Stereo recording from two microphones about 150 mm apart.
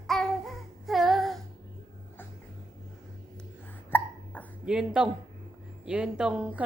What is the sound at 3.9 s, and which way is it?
Hiccup, 15° left (ahead or behind).